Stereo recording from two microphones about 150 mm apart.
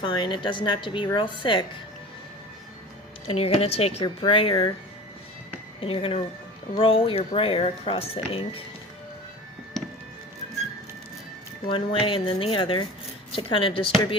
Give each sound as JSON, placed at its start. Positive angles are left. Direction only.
{"t": 0.0, "sound": "speech", "side_deg": 30}
{"t": 3.2, "sound": "speech", "side_deg": 40}
{"t": 5.8, "sound": "speech", "side_deg": 35}
{"t": 11.7, "sound": "speech", "side_deg": 35}